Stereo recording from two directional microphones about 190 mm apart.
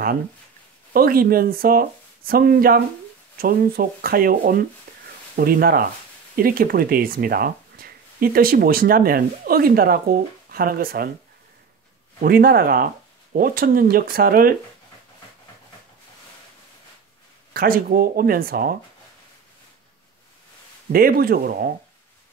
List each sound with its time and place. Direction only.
0.9 s speech: 50° right (ahead or behind)
12.2 s speech: 50° right (ahead or behind)
17.6 s speech: 50° right (ahead or behind)
20.9 s speech: 50° right (ahead or behind)